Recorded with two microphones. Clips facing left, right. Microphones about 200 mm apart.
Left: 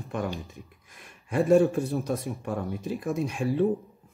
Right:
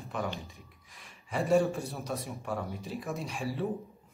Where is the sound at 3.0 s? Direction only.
55° left (ahead or behind).